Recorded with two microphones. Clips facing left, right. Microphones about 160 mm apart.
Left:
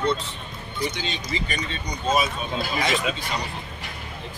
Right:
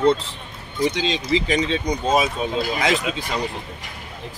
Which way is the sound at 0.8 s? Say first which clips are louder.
Right 8 dB; 90° right.